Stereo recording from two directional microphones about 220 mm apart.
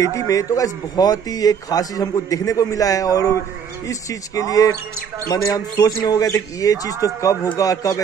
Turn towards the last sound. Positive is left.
turn(degrees=15)  # may be behind; listen again after turning